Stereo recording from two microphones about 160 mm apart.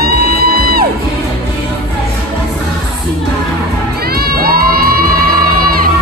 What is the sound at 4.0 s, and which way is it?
Music, 75° right (ahead or behind).